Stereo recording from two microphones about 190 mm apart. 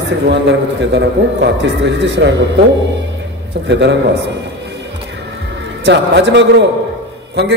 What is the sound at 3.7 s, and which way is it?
Speech, 65° right (ahead or behind).